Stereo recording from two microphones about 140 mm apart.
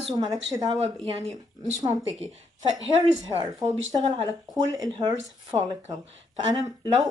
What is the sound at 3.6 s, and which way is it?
Speech, 30° right (ahead or behind).